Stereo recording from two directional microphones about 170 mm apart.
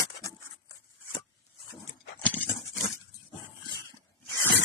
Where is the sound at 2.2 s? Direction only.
10° left (ahead or behind).